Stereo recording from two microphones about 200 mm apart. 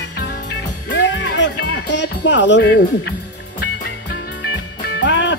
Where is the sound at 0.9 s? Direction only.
65° left (ahead or behind).